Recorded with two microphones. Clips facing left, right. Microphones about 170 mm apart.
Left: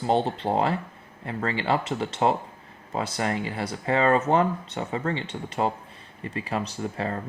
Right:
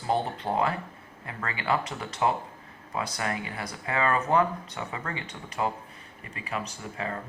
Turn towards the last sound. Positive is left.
turn(degrees=35)  # may be behind; listen again after turning